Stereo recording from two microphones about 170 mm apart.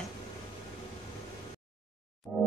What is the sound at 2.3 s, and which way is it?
Music, centre (ahead or behind).